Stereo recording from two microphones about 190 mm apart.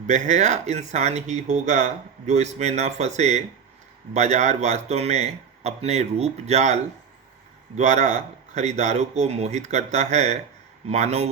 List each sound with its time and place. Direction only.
0.1 s speech: 40° right (ahead or behind)
7.8 s speech: 40° right (ahead or behind)